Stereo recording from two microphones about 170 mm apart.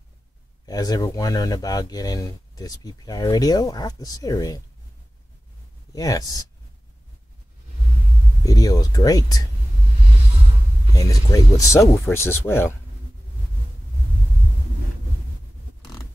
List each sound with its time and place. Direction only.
0.7 s speech: 20° left (ahead or behind)
5.9 s speech: 20° left (ahead or behind)
8.5 s speech: 20° left (ahead or behind)
11.0 s speech: 20° left (ahead or behind)